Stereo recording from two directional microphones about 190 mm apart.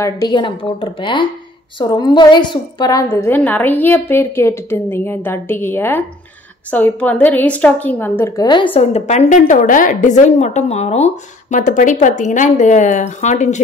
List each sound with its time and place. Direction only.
0.0 s a woman's voice: 20° left (ahead or behind)
8.7 s a woman's voice: 35° left (ahead or behind)